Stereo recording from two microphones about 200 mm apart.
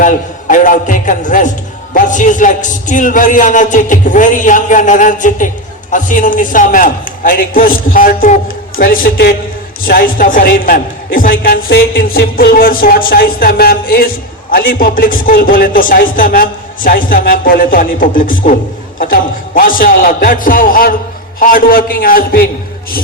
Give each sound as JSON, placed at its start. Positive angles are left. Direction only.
{"t": 0.0, "sound": "a man's voice", "side_deg": 40}